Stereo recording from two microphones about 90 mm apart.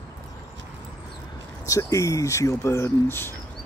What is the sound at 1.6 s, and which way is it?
Speech, 35° left (ahead or behind).